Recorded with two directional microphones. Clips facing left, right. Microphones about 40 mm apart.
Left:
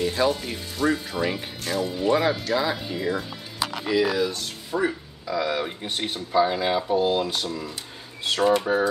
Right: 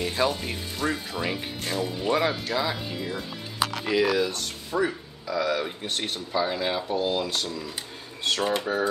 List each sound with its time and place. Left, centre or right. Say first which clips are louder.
0.0 s speech: left 3 dB; centre
3.8 s speech: left 1 dB; centre
5.4 s speech: even; centre